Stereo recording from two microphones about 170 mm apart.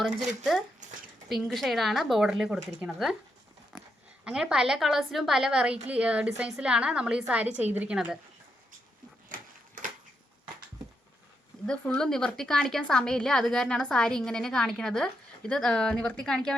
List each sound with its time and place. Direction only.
0.3 s a woman's voice: centre (ahead or behind)
9.3 s a sound: 55° right (ahead or behind)
11.6 s a woman's voice: 5° left (ahead or behind)